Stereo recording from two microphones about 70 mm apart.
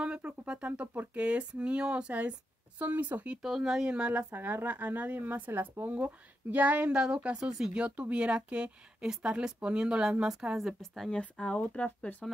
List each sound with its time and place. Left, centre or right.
0.0 s a woman's voice: centre
3.4 s a woman's voice: centre
10.8 s speech: centre
11.1 s speech: centre